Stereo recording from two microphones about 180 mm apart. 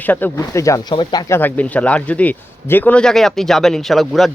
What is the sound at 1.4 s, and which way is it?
A man's voice, 10° left (ahead or behind).